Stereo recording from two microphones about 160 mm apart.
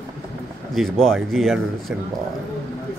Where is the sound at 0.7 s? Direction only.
Centre (ahead or behind).